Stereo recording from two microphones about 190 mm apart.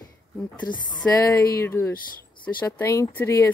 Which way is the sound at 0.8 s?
20° left (ahead or behind).